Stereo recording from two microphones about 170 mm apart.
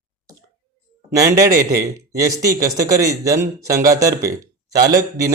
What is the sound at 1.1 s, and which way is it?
A man's voice, 20° right (ahead or behind).